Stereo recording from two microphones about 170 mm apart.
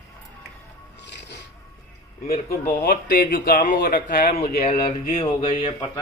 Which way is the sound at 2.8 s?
60° left (ahead or behind).